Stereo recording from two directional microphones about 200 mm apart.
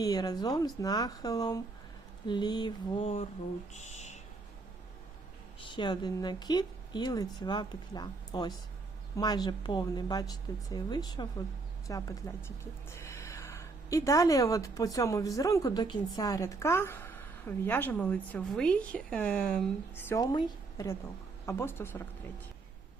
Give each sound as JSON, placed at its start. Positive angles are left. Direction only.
{"t": 0.0, "sound": "speech", "side_deg": 20}
{"t": 5.6, "sound": "a woman's voice", "side_deg": 25}